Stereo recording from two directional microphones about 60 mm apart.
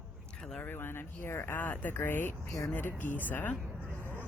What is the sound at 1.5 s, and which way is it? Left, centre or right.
Speech, left.